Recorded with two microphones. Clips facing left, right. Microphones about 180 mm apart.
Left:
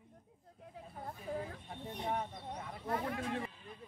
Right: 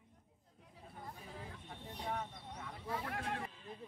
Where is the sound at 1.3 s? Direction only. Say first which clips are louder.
Left 16 dB; 55° left (ahead or behind).